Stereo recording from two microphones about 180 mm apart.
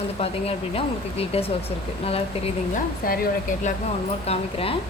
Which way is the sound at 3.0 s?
55° left (ahead or behind).